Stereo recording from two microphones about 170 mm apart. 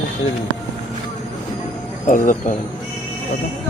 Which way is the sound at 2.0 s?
50° left (ahead or behind).